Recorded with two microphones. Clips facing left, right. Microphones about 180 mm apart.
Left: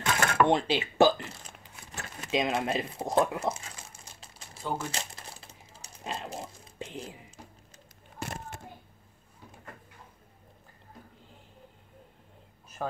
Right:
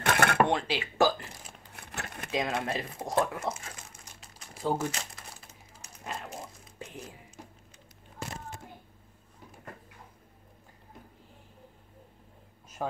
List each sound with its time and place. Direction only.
0.0 s dishes: 60° right (ahead or behind)
0.5 s speech: 20° left (ahead or behind)
1.7 s a sound: 60° right (ahead or behind)
2.3 s speech: 20° left (ahead or behind)
4.0 s crumpling: 30° left (ahead or behind)
8.2 s a sound: 60° left (ahead or behind)